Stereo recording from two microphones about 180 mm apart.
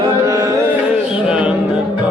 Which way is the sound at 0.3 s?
15° right (ahead or behind).